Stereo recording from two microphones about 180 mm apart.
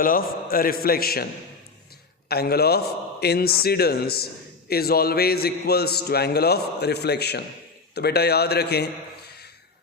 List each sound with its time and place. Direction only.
0.0 s a man's voice: 50° left (ahead or behind)
2.3 s a man's voice: 60° left (ahead or behind)